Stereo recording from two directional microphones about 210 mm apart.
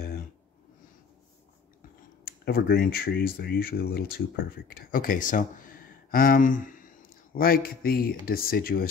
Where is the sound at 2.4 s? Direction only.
45° left (ahead or behind).